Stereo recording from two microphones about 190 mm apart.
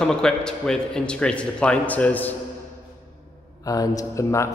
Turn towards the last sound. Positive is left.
turn(degrees=15)  # may be behind; listen again after turning